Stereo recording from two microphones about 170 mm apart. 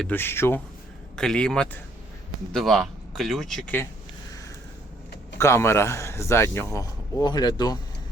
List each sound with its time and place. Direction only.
0.0 s a man's voice: 10° left (ahead or behind)
5.4 s a man's voice: 15° left (ahead or behind)